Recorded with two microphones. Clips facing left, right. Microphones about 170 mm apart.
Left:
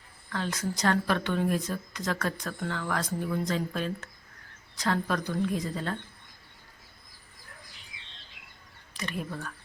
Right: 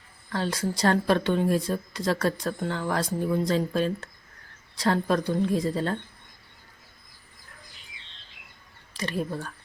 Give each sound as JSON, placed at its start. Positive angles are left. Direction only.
{"t": 0.3, "sound": "speech", "side_deg": -30}
{"t": 8.9, "sound": "speech", "side_deg": -35}